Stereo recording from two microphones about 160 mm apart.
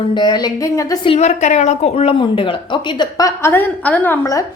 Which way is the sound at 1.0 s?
40° left (ahead or behind).